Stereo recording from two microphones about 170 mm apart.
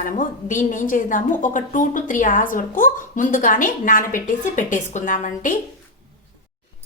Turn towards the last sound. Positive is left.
turn(degrees=50)  # may be behind; listen again after turning